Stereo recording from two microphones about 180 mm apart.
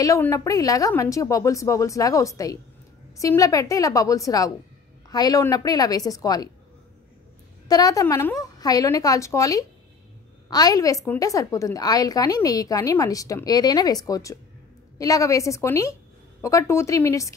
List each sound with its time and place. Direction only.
0.0 s a woman's voice: 15° left (ahead or behind)
7.6 s a woman's voice: 20° left (ahead or behind)